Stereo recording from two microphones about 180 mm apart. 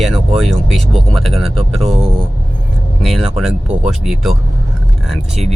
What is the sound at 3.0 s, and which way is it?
Speech, centre (ahead or behind).